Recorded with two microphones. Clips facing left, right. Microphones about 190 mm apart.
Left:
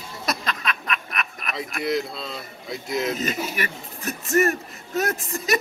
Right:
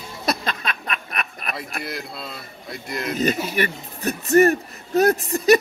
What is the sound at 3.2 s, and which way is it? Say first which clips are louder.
Speech: right 5 dB; 35° right (ahead or behind).